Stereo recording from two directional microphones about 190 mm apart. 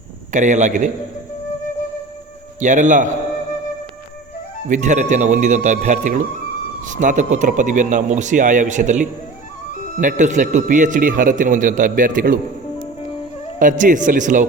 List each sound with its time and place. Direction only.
0.3 s speech: 40° right (ahead or behind)
2.6 s speech: 40° right (ahead or behind)
4.7 s a man's voice: 40° right (ahead or behind)
13.6 s a man's voice: 45° right (ahead or behind)